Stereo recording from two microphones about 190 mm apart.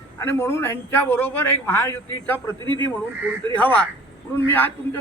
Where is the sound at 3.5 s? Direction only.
5° left (ahead or behind).